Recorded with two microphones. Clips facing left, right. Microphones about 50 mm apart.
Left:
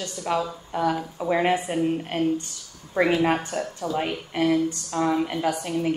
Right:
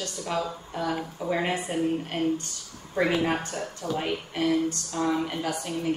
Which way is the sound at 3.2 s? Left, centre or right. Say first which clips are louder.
Left 4 dB; left.